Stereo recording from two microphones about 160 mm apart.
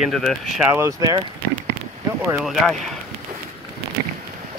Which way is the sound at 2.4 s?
Centre (ahead or behind).